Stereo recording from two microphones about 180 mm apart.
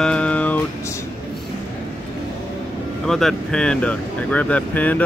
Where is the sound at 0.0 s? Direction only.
5° left (ahead or behind).